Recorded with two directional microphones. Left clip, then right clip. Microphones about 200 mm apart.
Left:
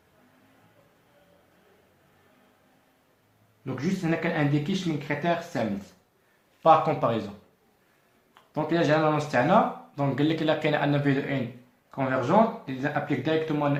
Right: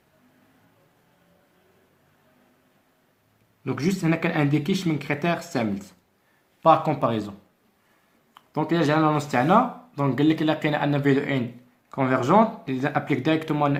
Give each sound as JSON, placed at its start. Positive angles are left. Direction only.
{"t": 3.6, "sound": "speech", "side_deg": -35}
{"t": 8.5, "sound": "speech", "side_deg": -30}